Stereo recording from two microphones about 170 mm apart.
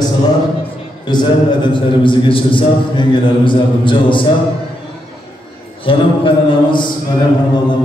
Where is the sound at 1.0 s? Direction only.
25° left (ahead or behind).